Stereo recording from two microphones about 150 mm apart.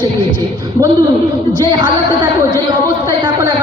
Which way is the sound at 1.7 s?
30° right (ahead or behind).